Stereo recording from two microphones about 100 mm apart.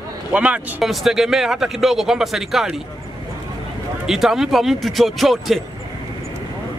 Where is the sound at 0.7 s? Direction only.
5° right (ahead or behind).